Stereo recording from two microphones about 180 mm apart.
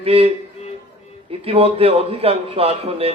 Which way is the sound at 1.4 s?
35° right (ahead or behind).